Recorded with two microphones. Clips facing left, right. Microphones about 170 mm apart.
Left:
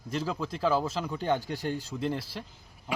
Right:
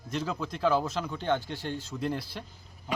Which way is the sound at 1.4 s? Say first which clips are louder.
Left 3 dB; 40° left (ahead or behind).